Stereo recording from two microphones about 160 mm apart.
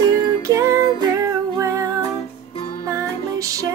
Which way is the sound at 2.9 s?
20° right (ahead or behind).